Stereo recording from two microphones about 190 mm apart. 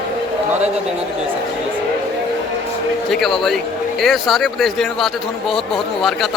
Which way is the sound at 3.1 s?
Centre (ahead or behind).